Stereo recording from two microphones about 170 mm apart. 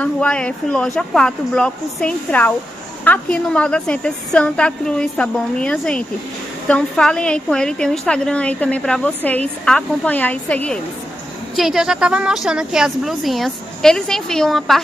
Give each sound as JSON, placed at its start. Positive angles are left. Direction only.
{"t": 0.0, "sound": "a woman's voice", "side_deg": 5}